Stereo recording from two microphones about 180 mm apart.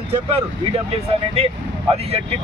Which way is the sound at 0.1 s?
30° right (ahead or behind).